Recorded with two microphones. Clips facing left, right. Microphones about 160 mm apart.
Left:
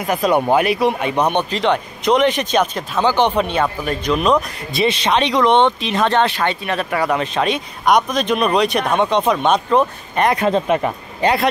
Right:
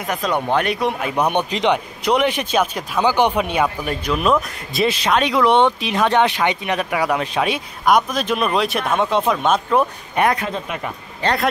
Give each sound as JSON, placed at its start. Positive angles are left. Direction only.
{"t": 0.0, "sound": "speech", "side_deg": 5}
{"t": 10.4, "sound": "speech", "side_deg": 35}